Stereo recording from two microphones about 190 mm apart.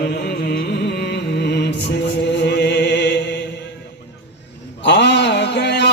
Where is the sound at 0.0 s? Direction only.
55° left (ahead or behind).